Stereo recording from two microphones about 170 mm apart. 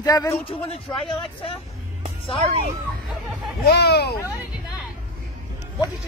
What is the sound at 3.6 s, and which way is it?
Speech, 70° left (ahead or behind).